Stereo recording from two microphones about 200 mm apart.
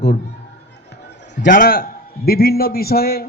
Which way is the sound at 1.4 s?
45° left (ahead or behind).